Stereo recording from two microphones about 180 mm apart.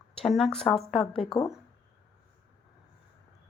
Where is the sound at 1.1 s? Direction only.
30° left (ahead or behind).